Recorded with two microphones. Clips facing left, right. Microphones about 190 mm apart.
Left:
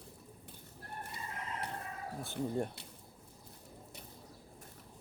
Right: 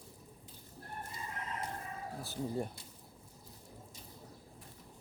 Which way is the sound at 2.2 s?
Centre (ahead or behind).